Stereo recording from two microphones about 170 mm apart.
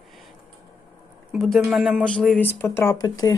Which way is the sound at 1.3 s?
Centre (ahead or behind).